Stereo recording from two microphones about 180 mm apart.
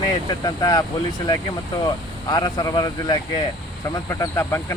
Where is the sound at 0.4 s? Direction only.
20° left (ahead or behind).